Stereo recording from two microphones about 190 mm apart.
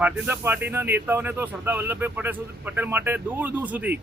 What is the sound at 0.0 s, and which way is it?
Speech, 10° right (ahead or behind).